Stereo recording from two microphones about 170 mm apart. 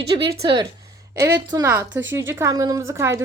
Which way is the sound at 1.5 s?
15° right (ahead or behind).